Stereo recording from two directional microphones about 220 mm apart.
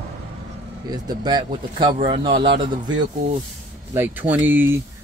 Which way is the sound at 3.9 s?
10° right (ahead or behind).